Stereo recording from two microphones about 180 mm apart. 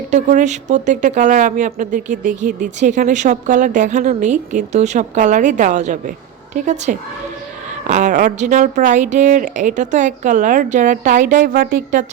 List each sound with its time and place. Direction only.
0.1 s a woman's voice: 40° right (ahead or behind)